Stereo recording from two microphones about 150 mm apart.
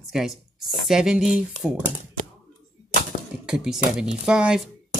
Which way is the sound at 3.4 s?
5° right (ahead or behind).